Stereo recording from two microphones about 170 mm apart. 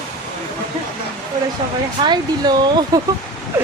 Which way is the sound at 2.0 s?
25° right (ahead or behind).